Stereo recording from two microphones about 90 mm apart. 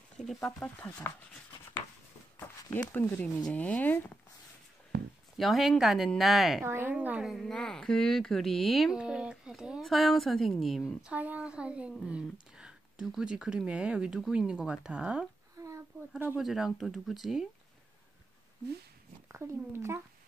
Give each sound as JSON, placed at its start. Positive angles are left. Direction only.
{"t": 0.2, "sound": "speech", "side_deg": 0}
{"t": 0.6, "sound": "speech", "side_deg": 10}
{"t": 1.0, "sound": "speech", "side_deg": 25}
{"t": 2.9, "sound": "speech", "side_deg": 20}
{"t": 5.4, "sound": "speech", "side_deg": 0}
{"t": 6.6, "sound": "speech", "side_deg": -25}
{"t": 7.2, "sound": "speech", "side_deg": 0}
{"t": 11.1, "sound": "speech", "side_deg": -15}
{"t": 15.6, "sound": "a sound", "side_deg": -35}
{"t": 16.3, "sound": "speech", "side_deg": -5}
{"t": 19.2, "sound": "speech", "side_deg": -30}